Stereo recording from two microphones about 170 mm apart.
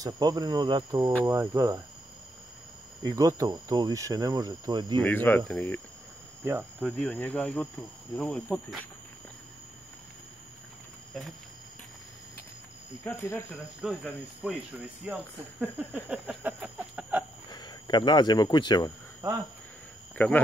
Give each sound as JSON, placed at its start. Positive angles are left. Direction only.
{"t": 0.0, "sound": "speech", "side_deg": -20}
{"t": 3.0, "sound": "speech", "side_deg": -20}
{"t": 5.0, "sound": "speech", "side_deg": 10}
{"t": 6.9, "sound": "speech", "side_deg": 5}
{"t": 13.0, "sound": "speech", "side_deg": 15}
{"t": 13.7, "sound": "speech", "side_deg": -5}
{"t": 17.5, "sound": "speech", "side_deg": 25}
{"t": 20.2, "sound": "speech", "side_deg": 10}